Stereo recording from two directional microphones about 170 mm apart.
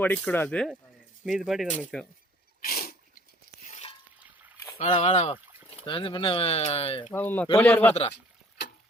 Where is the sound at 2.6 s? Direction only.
60° left (ahead or behind).